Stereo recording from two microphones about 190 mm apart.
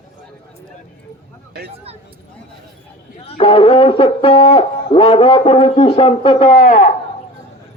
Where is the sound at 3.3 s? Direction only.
30° left (ahead or behind).